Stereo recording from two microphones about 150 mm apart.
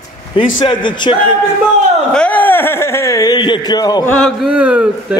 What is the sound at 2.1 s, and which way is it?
Speech, 10° left (ahead or behind).